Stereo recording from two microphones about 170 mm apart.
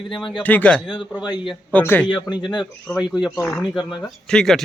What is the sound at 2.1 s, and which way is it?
Speech, 25° left (ahead or behind).